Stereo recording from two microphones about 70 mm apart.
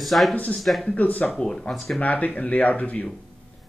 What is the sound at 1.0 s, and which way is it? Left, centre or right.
Speech, left.